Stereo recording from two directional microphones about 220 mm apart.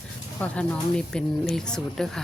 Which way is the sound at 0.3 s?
5° left (ahead or behind).